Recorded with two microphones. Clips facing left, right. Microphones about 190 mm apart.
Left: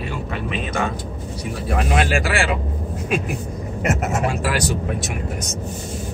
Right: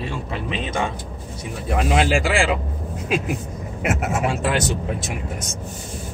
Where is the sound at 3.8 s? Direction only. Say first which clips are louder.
Left 1 dB; centre (ahead or behind).